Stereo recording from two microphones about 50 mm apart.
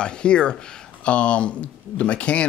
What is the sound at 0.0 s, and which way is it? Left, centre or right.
Speech, centre.